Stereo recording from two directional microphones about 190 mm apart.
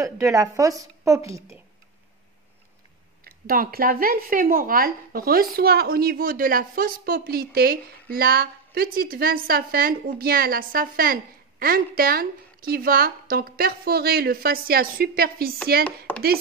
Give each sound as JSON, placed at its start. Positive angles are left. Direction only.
{"t": 0.0, "sound": "a woman's voice", "side_deg": -15}
{"t": 3.3, "sound": "speech", "side_deg": -50}
{"t": 16.1, "sound": "a sound", "side_deg": 10}